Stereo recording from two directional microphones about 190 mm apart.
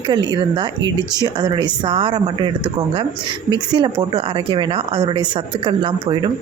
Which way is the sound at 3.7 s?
25° right (ahead or behind).